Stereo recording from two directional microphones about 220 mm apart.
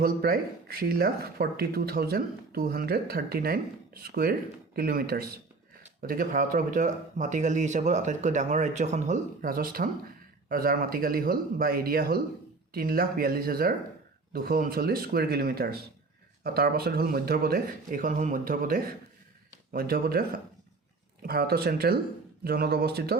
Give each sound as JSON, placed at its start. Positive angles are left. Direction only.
{"t": 0.0, "sound": "speech", "side_deg": -45}